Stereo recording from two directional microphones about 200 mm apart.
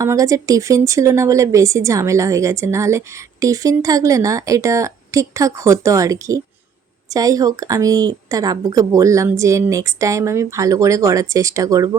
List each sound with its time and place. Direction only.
0.0 s a woman's voice: 15° right (ahead or behind)